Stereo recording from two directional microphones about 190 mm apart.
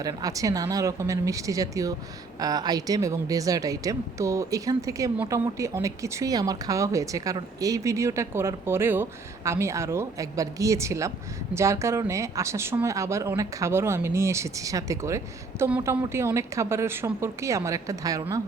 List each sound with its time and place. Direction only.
0.0 s a woman's voice: 20° right (ahead or behind)